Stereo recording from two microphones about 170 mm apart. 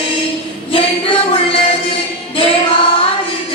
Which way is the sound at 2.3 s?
30° left (ahead or behind).